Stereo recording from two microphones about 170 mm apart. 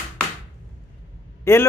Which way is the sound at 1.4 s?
15° left (ahead or behind).